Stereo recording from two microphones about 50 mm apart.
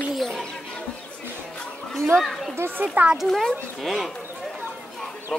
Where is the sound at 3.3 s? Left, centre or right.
Centre.